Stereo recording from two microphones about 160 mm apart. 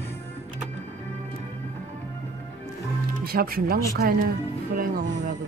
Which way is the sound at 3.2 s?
65° right (ahead or behind).